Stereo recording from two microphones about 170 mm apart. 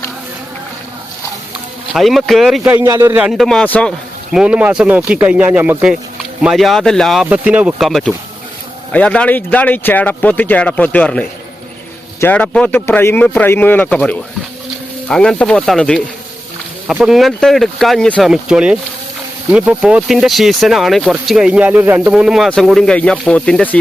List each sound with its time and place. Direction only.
1.9 s speech: centre (ahead or behind)
2.7 s a man's voice: 15° right (ahead or behind)
3.3 s speech: centre (ahead or behind)